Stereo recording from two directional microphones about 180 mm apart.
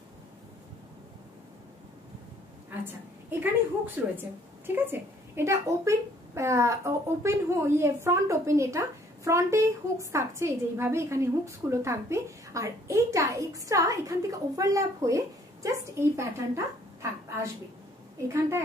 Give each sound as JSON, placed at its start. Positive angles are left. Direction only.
{"t": 2.8, "sound": "a woman's voice", "side_deg": -10}